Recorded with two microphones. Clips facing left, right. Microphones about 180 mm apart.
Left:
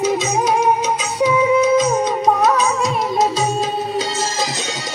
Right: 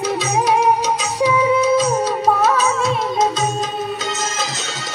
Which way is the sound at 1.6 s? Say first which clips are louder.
Left 1 dB; 10° left (ahead or behind).